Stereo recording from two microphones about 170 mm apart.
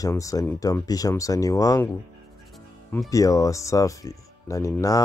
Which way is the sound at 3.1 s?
20° left (ahead or behind).